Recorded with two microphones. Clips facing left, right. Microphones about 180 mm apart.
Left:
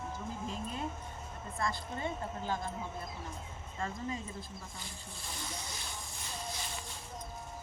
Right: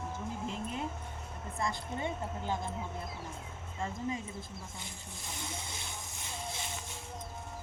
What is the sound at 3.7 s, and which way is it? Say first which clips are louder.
Speech: right 2 dB; 10° right (ahead or behind).